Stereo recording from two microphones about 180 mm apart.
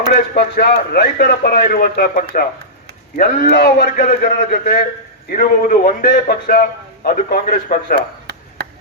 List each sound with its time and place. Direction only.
0.1 s a man's voice: 60° left (ahead or behind)